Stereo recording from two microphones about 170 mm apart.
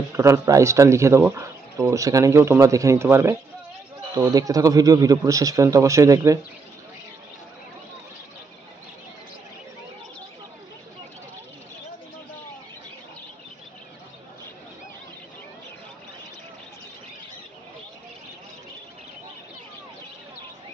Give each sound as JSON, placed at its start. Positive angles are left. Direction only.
{"t": 0.1, "sound": "a man's voice", "side_deg": -15}